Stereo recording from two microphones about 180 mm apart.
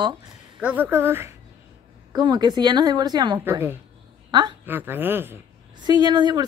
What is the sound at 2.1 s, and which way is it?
Speech, 25° right (ahead or behind).